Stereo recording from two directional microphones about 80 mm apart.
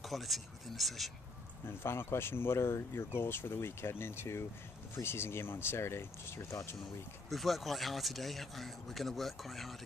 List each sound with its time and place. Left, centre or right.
0.0 s speech: centre
1.7 s speech: left
7.2 s speech: centre